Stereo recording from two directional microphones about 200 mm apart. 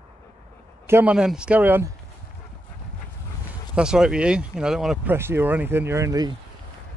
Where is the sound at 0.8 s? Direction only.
10° right (ahead or behind).